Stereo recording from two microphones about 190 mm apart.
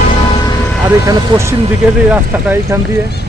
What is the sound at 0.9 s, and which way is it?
Speech, 15° right (ahead or behind).